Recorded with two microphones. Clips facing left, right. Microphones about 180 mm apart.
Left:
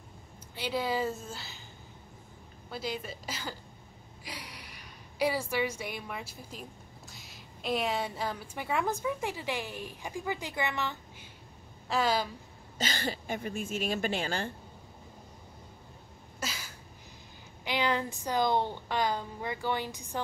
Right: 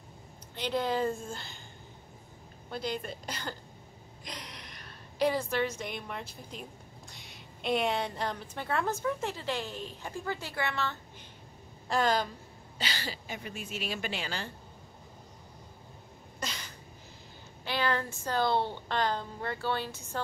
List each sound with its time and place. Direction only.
0.6 s a woman's voice: 5° left (ahead or behind)
2.7 s a woman's voice: 5° left (ahead or behind)
11.9 s a woman's voice: 5° left (ahead or behind)
12.7 s a woman's voice: 45° left (ahead or behind)
16.3 s a sound: 5° left (ahead or behind)
17.6 s a woman's voice: 15° left (ahead or behind)